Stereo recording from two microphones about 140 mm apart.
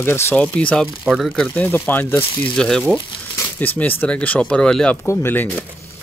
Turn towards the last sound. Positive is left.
turn(degrees=15)  # may be behind; listen again after turning